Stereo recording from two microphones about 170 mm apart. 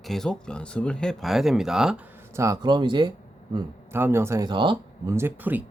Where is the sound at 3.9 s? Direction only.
15° right (ahead or behind).